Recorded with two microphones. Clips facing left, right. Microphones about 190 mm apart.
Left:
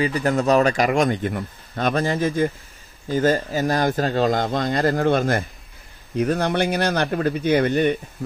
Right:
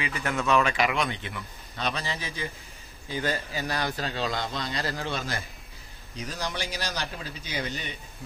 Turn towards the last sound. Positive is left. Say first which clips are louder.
# left 16 dB
turn(degrees=55)  # may be behind; listen again after turning